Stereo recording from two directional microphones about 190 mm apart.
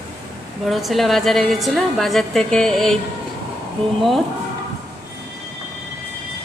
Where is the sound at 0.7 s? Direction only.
Centre (ahead or behind).